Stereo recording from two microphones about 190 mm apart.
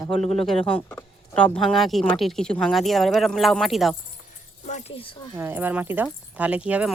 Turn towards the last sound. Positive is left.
turn(degrees=-5)  # may be behind; listen again after turning